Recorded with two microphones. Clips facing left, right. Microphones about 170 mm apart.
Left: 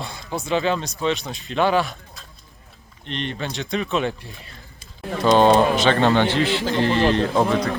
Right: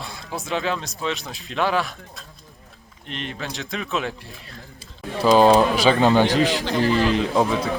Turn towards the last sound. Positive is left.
turn(degrees=0)  # may be behind; listen again after turning